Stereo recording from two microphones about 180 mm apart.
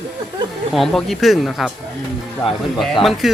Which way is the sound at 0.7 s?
Centre (ahead or behind).